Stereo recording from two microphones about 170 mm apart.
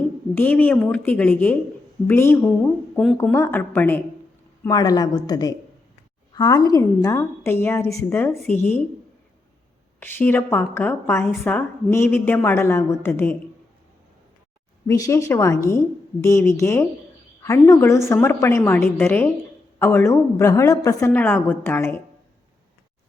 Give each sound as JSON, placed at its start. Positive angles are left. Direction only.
{"t": 0.3, "sound": "a woman's voice", "side_deg": 10}
{"t": 2.9, "sound": "speech", "side_deg": 0}
{"t": 3.3, "sound": "a woman's voice", "side_deg": 15}
{"t": 4.7, "sound": "a woman's voice", "side_deg": 20}
{"t": 10.0, "sound": "a woman's voice", "side_deg": 10}
{"t": 14.8, "sound": "a woman's voice", "side_deg": 20}